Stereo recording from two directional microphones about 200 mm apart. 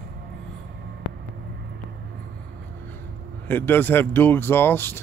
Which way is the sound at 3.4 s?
10° left (ahead or behind).